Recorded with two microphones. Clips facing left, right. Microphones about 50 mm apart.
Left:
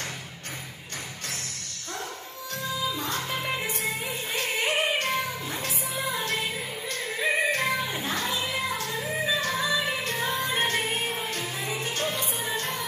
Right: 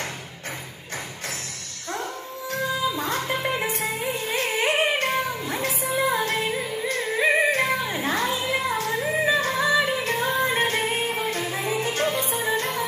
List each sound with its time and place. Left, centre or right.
2.5 s music: right